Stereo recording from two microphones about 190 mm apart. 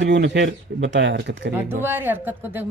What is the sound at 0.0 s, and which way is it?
Speech, 70° right (ahead or behind).